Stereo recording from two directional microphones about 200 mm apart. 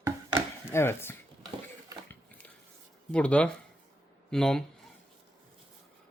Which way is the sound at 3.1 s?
5° left (ahead or behind).